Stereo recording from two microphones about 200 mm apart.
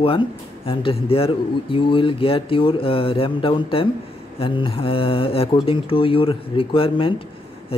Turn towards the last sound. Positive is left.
turn(degrees=25)  # may be behind; listen again after turning